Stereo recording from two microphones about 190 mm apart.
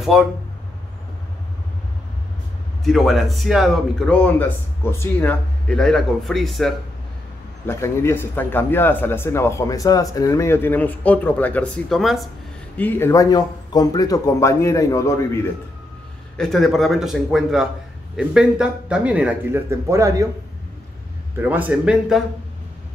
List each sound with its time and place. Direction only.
2.8 s a man's voice: centre (ahead or behind)
7.6 s a man's voice: 15° left (ahead or behind)
12.7 s a man's voice: 10° left (ahead or behind)
16.3 s a man's voice: centre (ahead or behind); by 20.2 s 15° right (ahead or behind)
21.4 s speech: 10° right (ahead or behind)